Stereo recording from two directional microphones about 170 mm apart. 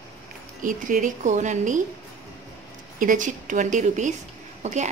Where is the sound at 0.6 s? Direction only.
50° right (ahead or behind).